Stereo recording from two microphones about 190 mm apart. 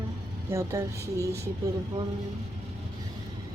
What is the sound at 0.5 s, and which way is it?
Speech, 15° right (ahead or behind).